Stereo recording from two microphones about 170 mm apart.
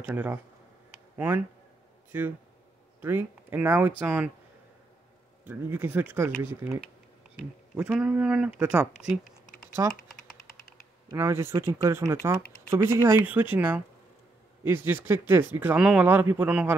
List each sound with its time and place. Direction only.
0.0 s speech: 10° right (ahead or behind)
3.0 s speech: 10° right (ahead or behind)
5.4 s speech: 10° right (ahead or behind)
9.8 s speech: 20° right (ahead or behind)
11.1 s speech: 15° right (ahead or behind)